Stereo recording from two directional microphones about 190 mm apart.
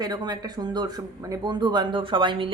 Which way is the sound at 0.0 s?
20° right (ahead or behind).